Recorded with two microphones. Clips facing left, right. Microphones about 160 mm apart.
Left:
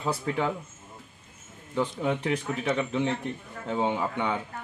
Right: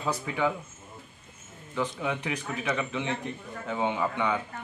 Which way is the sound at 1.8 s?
30° left (ahead or behind).